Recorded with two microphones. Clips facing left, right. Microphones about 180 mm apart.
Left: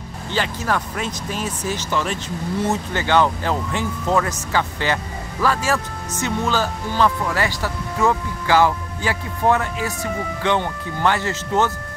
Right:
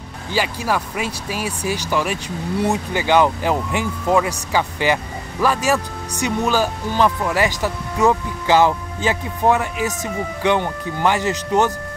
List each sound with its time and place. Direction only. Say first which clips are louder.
0.3 s speech: right 2 dB; 10° right (ahead or behind)